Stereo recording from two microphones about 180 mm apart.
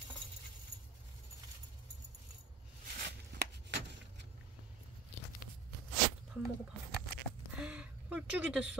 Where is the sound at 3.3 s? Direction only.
75° right (ahead or behind).